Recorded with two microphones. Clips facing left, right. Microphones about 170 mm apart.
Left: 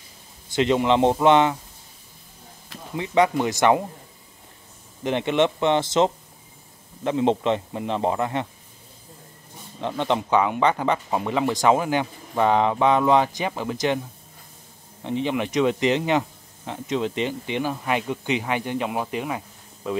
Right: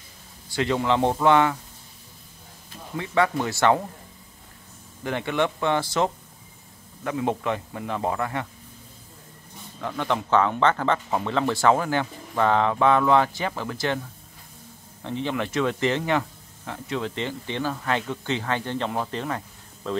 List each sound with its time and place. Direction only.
0.5 s a man's voice: 20° left (ahead or behind)
3.0 s speech: 20° left (ahead or behind)
5.0 s a man's voice: 20° left (ahead or behind)
9.8 s speech: 25° left (ahead or behind)
15.0 s speech: 15° left (ahead or behind)